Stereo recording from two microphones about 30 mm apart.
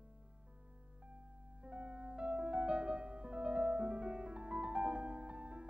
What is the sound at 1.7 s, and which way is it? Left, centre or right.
Music, right.